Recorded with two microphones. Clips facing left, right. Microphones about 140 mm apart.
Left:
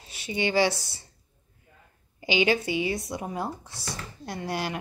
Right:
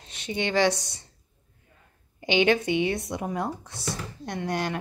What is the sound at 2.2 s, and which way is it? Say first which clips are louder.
Speech: right 2 dB; 5° left (ahead or behind).